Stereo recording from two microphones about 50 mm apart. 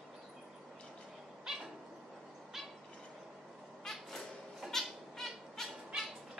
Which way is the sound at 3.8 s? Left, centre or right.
Centre.